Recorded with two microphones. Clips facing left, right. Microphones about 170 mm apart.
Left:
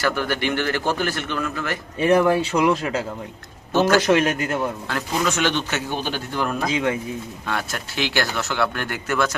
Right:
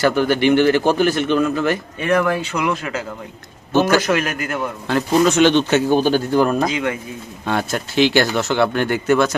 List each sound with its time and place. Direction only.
0.0 s speech: 20° right (ahead or behind)
2.0 s speech: 30° left (ahead or behind)
3.7 s a man's voice: 20° right (ahead or behind)
4.0 s a man's voice: 30° left (ahead or behind)
4.9 s speech: 25° right (ahead or behind)
5.9 s speech: 40° right (ahead or behind)
6.7 s a man's voice: 25° left (ahead or behind)
7.4 s speech: 25° right (ahead or behind)